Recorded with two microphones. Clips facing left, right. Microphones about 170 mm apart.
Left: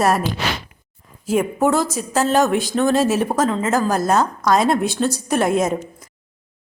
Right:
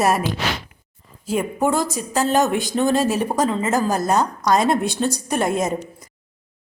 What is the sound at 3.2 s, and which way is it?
A man's voice, 10° right (ahead or behind).